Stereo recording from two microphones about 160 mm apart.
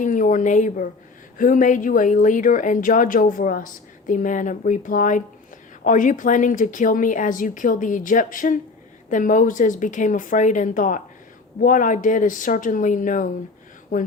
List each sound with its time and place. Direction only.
0.0 s speech: 55° left (ahead or behind)